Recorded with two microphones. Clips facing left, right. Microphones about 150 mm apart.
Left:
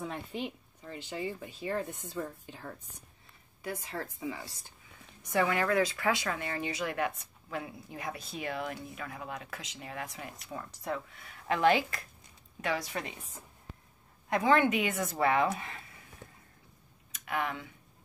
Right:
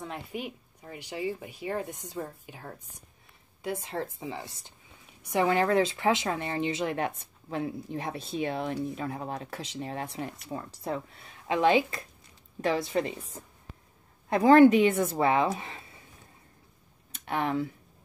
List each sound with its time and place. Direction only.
0.3 s a woman's voice: 10° right (ahead or behind)
5.5 s a woman's voice: 30° right (ahead or behind)
11.4 s a woman's voice: 20° right (ahead or behind)
14.3 s a woman's voice: 35° right (ahead or behind)
17.1 s speech: 30° right (ahead or behind)